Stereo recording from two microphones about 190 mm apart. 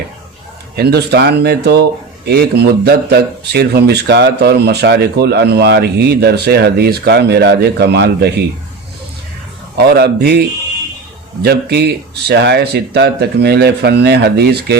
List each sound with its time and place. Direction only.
0.8 s speech: 60° right (ahead or behind)
9.7 s speech: 55° right (ahead or behind)
11.4 s speech: 60° right (ahead or behind)